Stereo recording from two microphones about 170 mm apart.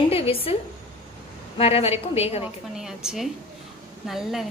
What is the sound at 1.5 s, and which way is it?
Speech, 35° left (ahead or behind).